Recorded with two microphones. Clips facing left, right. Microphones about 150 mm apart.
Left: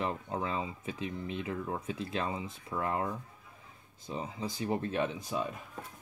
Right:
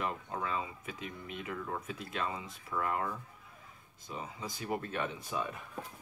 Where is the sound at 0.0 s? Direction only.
25° left (ahead or behind).